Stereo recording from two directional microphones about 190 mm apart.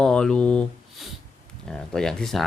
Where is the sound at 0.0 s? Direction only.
5° left (ahead or behind).